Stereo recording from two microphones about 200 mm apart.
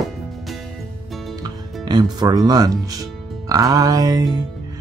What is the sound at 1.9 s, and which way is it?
Speech, 20° right (ahead or behind).